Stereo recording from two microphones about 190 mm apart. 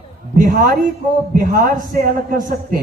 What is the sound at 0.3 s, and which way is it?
A man's voice, 45° right (ahead or behind).